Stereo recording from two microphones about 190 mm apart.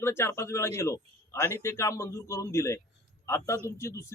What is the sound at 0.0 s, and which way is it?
Speech, 15° left (ahead or behind).